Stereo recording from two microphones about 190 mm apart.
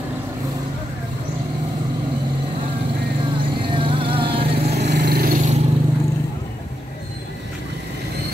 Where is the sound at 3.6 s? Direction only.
25° right (ahead or behind).